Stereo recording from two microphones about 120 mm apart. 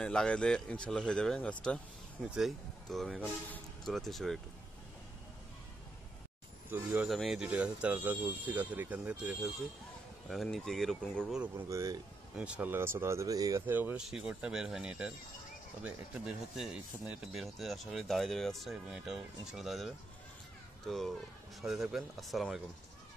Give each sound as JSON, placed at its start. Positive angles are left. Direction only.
{"t": 0.0, "sound": "speech", "side_deg": 5}
{"t": 6.7, "sound": "speech", "side_deg": -15}
{"t": 7.1, "sound": "speech", "side_deg": 0}
{"t": 10.2, "sound": "speech", "side_deg": 0}
{"t": 11.3, "sound": "speech", "side_deg": -15}
{"t": 11.7, "sound": "speech", "side_deg": -25}
{"t": 12.4, "sound": "speech", "side_deg": -10}
{"t": 13.7, "sound": "speech", "side_deg": -15}